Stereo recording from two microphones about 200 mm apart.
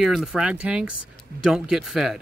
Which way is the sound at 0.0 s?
Centre (ahead or behind).